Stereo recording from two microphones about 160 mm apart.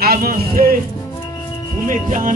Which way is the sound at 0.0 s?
70° right (ahead or behind).